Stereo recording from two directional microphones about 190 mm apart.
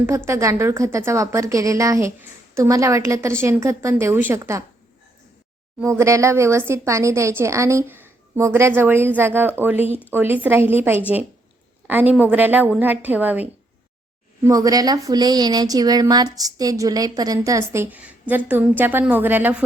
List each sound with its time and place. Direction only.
0.3 s a woman's voice: 15° right (ahead or behind)
5.8 s a woman's voice: 15° right (ahead or behind)